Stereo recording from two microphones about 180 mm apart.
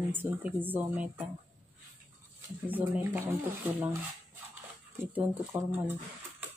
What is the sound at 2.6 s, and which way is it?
Speech, 10° right (ahead or behind).